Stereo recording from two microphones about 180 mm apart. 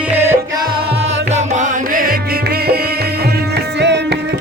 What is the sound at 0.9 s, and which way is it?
Music, 35° right (ahead or behind).